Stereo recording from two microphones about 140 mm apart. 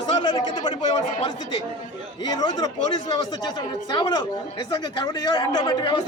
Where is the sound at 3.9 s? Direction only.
30° left (ahead or behind).